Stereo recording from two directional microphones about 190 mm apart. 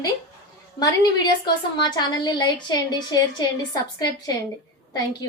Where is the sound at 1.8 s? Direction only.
25° left (ahead or behind).